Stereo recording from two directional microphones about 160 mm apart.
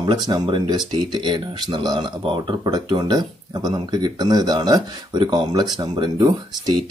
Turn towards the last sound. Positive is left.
turn(degrees=-30)  # may be behind; listen again after turning